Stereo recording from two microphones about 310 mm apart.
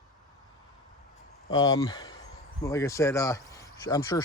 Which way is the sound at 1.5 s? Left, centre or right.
Centre.